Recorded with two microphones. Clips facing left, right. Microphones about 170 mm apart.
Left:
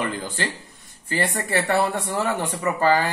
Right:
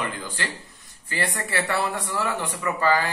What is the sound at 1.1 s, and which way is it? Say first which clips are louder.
Speech: left 4 dB; 45° left (ahead or behind).